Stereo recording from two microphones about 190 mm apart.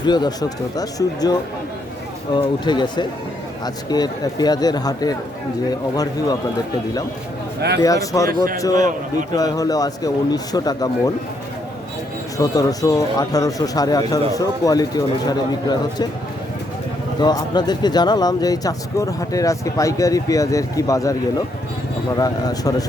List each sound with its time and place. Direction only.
0.0 s speech: 20° left (ahead or behind)
7.8 s speech: 20° left (ahead or behind)
12.4 s speech: 20° left (ahead or behind)
17.2 s speech: 20° left (ahead or behind)